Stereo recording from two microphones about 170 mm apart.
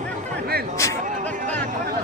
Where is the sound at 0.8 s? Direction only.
15° left (ahead or behind).